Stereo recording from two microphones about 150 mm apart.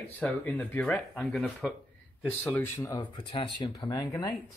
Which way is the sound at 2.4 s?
15° left (ahead or behind).